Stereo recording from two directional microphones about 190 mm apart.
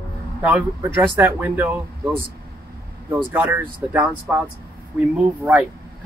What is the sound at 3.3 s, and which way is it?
Speech, 10° right (ahead or behind).